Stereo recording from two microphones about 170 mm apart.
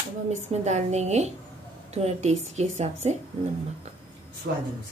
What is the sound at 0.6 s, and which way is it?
A woman's voice, 40° right (ahead or behind).